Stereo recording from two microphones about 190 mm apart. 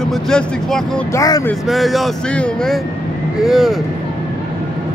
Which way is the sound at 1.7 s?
Centre (ahead or behind).